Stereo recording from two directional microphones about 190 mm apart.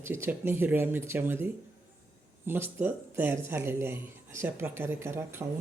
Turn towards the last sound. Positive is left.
turn(degrees=-10)  # may be behind; listen again after turning